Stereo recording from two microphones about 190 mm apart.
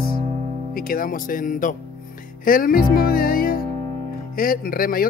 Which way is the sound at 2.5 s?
50° left (ahead or behind).